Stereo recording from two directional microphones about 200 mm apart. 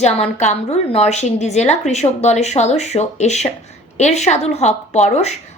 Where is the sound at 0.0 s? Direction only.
35° left (ahead or behind).